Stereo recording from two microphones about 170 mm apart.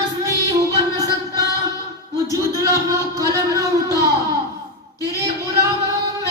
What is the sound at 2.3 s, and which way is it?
Speech, 20° right (ahead or behind).